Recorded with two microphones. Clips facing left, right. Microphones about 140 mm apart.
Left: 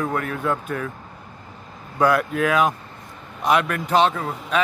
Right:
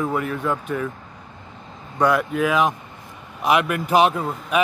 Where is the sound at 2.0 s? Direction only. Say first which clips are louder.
Even; centre (ahead or behind).